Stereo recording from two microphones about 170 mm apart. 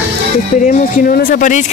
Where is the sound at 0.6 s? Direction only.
60° left (ahead or behind).